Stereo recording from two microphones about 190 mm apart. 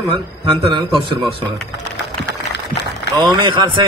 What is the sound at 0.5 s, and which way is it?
Speech, 25° right (ahead or behind).